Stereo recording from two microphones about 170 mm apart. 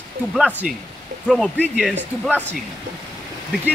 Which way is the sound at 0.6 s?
50° right (ahead or behind).